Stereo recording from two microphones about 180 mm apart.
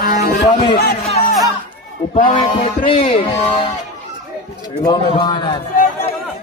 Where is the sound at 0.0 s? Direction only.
65° left (ahead or behind).